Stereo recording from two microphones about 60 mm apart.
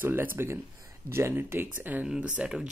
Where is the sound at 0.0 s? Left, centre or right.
Right.